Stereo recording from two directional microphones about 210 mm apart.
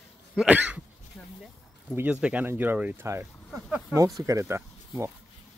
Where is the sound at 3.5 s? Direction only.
5° right (ahead or behind).